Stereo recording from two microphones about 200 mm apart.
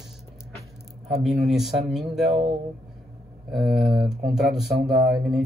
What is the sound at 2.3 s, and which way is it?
Speech, 25° right (ahead or behind).